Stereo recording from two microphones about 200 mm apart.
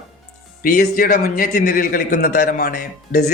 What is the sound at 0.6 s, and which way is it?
A man's voice, 45° left (ahead or behind).